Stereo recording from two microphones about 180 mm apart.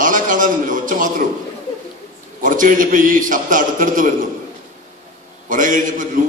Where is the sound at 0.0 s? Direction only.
45° right (ahead or behind).